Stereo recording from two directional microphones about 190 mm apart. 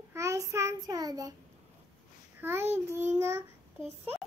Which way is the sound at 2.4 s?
10° right (ahead or behind).